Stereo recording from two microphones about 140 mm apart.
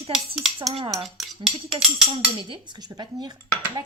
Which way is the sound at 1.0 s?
Centre (ahead or behind).